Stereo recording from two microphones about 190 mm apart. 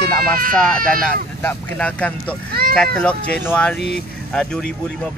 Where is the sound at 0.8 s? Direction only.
50° right (ahead or behind).